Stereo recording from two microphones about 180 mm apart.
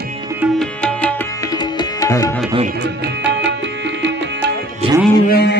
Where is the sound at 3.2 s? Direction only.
75° right (ahead or behind).